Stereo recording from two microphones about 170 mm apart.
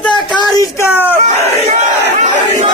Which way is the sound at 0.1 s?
25° left (ahead or behind).